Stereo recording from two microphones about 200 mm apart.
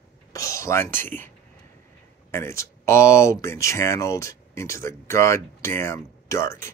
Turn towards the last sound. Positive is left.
turn(degrees=15)  # may be behind; listen again after turning